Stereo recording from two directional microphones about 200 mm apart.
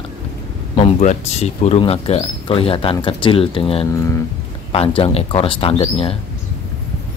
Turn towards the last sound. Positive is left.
turn(degrees=30)  # may be behind; listen again after turning